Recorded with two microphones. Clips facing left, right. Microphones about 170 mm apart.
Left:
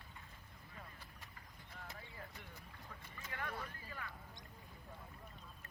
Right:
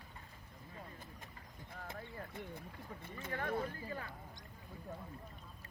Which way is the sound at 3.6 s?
30° right (ahead or behind).